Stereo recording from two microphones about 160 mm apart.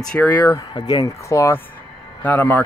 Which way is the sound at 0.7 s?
25° left (ahead or behind).